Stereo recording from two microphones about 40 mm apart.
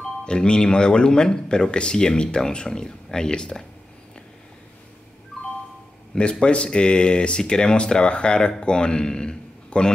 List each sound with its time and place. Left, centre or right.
0.2 s speech: left
6.1 s a man's voice: left